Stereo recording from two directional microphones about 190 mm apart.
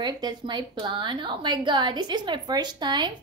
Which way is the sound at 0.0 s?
20° right (ahead or behind).